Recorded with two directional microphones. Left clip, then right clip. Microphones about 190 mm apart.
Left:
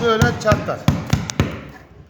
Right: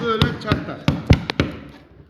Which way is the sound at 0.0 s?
40° left (ahead or behind).